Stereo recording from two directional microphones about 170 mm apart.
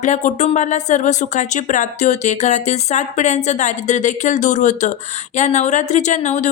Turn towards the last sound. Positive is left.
turn(degrees=45)  # may be behind; listen again after turning